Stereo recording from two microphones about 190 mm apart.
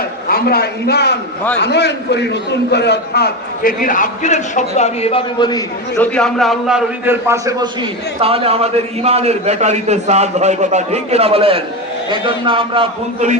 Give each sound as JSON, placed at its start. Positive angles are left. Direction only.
{"t": 0.3, "sound": "a man's voice", "side_deg": 55}
{"t": 6.0, "sound": "a man's voice", "side_deg": 5}